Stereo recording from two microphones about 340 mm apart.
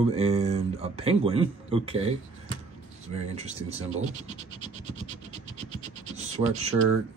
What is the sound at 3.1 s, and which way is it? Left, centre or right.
Speech, centre.